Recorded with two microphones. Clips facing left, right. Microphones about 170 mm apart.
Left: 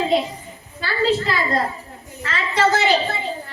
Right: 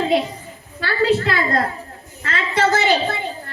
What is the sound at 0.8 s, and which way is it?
Speech, 60° right (ahead or behind).